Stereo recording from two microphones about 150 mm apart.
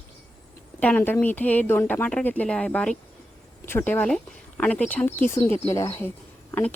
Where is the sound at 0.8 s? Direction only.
10° left (ahead or behind).